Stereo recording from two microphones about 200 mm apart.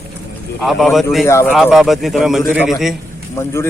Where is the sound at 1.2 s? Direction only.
15° left (ahead or behind).